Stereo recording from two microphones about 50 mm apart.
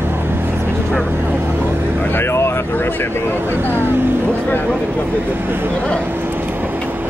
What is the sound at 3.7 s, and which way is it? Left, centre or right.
Vehicle, right.